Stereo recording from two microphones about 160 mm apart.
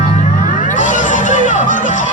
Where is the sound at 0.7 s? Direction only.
50° left (ahead or behind).